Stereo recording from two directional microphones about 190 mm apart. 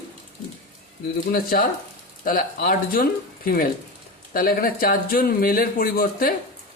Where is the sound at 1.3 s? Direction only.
50° left (ahead or behind).